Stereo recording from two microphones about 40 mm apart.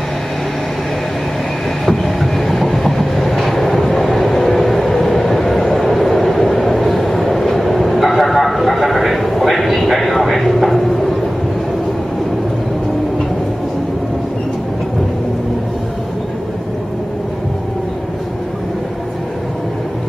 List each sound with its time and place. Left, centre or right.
1.9 s train: centre